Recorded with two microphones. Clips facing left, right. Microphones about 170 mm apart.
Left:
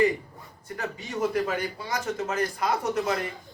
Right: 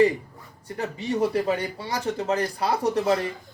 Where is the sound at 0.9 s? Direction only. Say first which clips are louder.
Right 3 dB; 30° right (ahead or behind).